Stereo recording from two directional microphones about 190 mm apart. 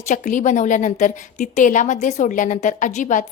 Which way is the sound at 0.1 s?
40° left (ahead or behind).